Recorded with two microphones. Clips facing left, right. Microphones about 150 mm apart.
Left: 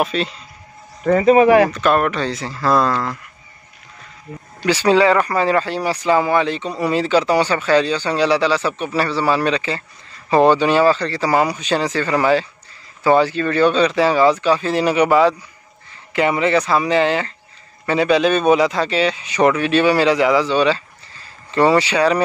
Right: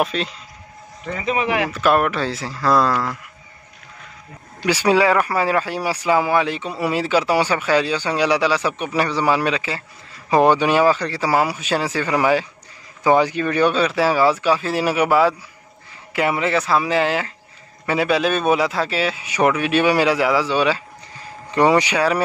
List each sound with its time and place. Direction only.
0.0 s speech: centre (ahead or behind)
1.0 s speech: 45° left (ahead or behind)
1.7 s speech: 5° right (ahead or behind)
4.6 s speech: 10° right (ahead or behind)